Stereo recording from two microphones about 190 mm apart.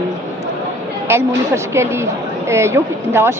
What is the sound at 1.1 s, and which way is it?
A woman's voice, 15° right (ahead or behind).